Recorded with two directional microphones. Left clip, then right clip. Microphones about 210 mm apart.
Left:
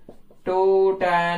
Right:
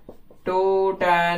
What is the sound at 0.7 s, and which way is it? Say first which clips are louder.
Mantra: left 2 dB; 10° right (ahead or behind).